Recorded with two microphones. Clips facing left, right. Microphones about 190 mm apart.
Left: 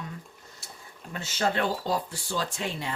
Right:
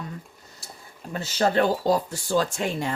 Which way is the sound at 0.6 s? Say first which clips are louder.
Right 4 dB; 35° right (ahead or behind).